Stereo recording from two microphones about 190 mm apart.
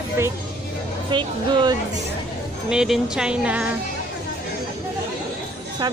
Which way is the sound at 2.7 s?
5° right (ahead or behind).